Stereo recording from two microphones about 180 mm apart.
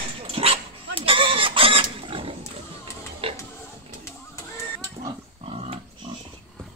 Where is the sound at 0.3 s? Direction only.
30° right (ahead or behind).